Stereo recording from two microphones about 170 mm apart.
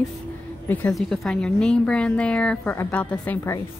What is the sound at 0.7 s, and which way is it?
A woman's voice, 5° left (ahead or behind).